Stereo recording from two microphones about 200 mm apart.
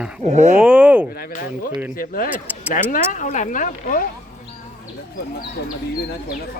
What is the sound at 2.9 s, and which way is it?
Speech, 40° left (ahead or behind).